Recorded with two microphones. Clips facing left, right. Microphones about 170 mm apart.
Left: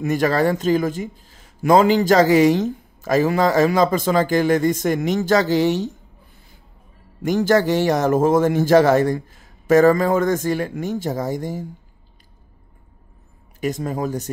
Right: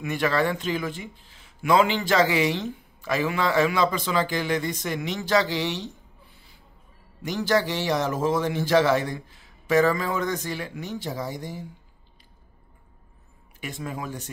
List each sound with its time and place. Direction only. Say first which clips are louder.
0.0 s speech: left 6 dB; 40° left (ahead or behind)
7.2 s speech: left 7 dB; 50° left (ahead or behind)
13.6 s speech: left 10 dB; 40° left (ahead or behind)